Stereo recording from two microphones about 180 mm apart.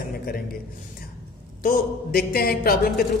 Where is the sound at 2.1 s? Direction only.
55° left (ahead or behind).